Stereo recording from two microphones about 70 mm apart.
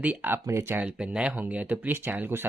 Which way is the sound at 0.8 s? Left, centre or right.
Centre.